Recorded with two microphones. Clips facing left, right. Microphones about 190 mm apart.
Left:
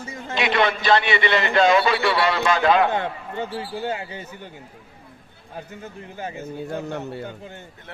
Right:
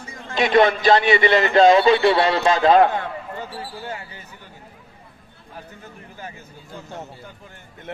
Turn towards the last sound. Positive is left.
turn(degrees=65)  # may be behind; listen again after turning